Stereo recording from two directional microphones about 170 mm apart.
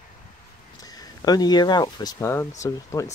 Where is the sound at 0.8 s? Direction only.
20° left (ahead or behind).